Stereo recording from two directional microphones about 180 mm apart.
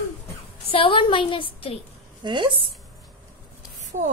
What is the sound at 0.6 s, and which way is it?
A woman's voice, 30° left (ahead or behind).